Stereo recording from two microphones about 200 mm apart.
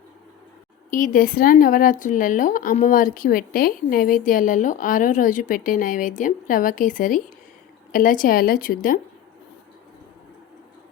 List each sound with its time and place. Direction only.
0.9 s speech: 40° left (ahead or behind)